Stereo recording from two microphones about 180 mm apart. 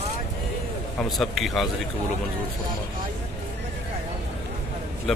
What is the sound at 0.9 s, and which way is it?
Speech, centre (ahead or behind).